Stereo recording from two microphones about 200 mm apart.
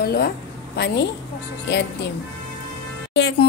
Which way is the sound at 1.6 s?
60° left (ahead or behind).